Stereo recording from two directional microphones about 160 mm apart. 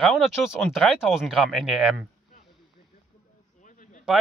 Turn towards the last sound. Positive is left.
turn(degrees=50)  # may be behind; listen again after turning